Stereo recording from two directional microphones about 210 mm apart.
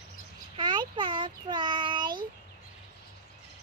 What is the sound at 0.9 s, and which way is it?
A child's voice, 20° right (ahead or behind).